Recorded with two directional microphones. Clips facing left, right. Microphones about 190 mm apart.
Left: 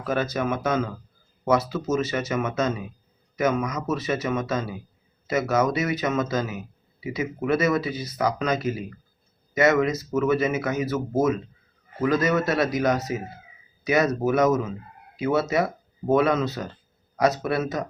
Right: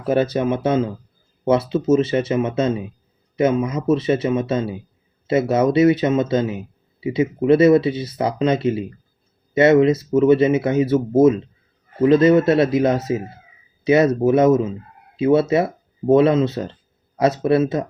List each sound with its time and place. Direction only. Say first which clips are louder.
0.0 s speech: right 7 dB; 30° right (ahead or behind)